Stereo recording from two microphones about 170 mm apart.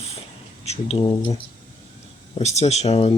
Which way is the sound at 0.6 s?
40° left (ahead or behind).